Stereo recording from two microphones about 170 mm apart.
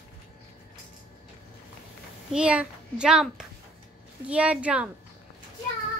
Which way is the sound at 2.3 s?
5° right (ahead or behind).